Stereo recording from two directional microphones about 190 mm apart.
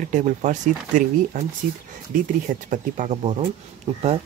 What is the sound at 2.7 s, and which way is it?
Speech, 40° right (ahead or behind).